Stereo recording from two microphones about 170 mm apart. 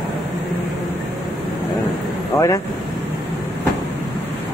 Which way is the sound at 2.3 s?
20° left (ahead or behind).